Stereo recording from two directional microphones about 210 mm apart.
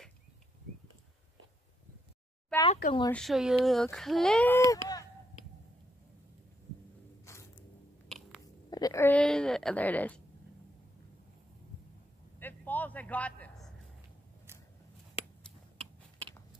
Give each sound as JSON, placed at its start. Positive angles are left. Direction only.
{"t": 2.7, "sound": "speech", "side_deg": 30}
{"t": 3.1, "sound": "speech", "side_deg": 0}
{"t": 4.6, "sound": "speech", "side_deg": 15}
{"t": 7.3, "sound": "a sound", "side_deg": 15}
{"t": 8.6, "sound": "speech", "side_deg": 20}
{"t": 12.4, "sound": "a sound", "side_deg": 10}